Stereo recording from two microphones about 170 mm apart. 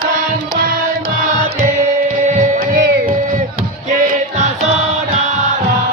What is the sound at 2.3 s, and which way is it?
Music, 50° right (ahead or behind).